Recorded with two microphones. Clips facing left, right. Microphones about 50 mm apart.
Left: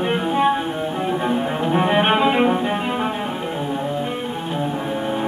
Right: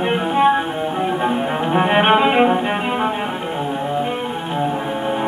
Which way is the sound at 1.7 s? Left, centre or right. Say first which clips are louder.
Right 3 dB; right.